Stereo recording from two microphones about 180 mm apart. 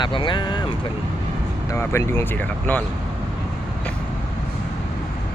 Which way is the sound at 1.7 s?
15° left (ahead or behind).